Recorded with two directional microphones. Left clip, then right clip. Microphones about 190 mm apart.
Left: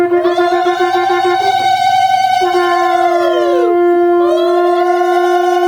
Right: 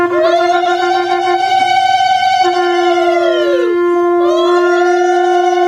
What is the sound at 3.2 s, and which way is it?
Howl, 55° left (ahead or behind).